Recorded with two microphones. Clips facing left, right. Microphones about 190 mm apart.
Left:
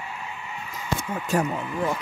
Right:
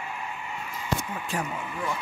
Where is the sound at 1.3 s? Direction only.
40° left (ahead or behind).